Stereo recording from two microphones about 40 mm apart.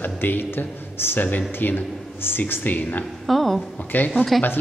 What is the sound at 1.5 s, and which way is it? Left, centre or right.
Speech, left.